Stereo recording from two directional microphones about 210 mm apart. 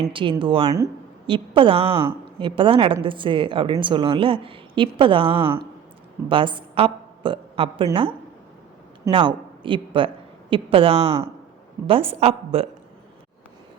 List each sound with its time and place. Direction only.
0.1 s a woman's voice: 25° right (ahead or behind)
9.0 s a woman's voice: 25° right (ahead or behind)